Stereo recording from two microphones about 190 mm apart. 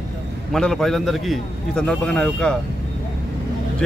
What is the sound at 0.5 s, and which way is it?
A man's voice, 5° left (ahead or behind).